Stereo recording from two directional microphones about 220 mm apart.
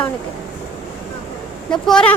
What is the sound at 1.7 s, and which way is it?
Speech, 5° left (ahead or behind).